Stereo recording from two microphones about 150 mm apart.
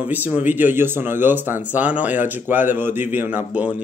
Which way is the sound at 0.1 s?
10° right (ahead or behind).